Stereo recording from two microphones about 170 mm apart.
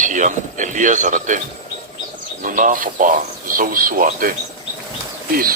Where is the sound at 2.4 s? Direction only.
50° right (ahead or behind).